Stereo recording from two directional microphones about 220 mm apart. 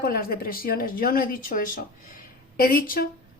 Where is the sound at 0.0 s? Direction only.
45° left (ahead or behind).